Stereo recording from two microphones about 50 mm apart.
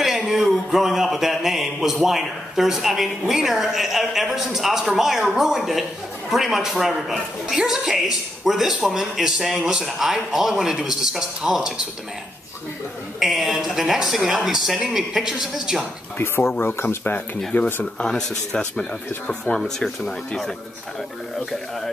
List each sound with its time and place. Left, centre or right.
0.0 s a woman's voice: centre
13.2 s a woman's voice: centre
16.2 s speech: left
17.9 s speech: centre
19.6 s speech: centre